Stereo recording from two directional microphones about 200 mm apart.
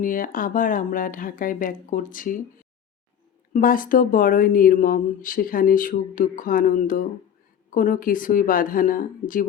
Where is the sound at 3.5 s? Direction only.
45° left (ahead or behind).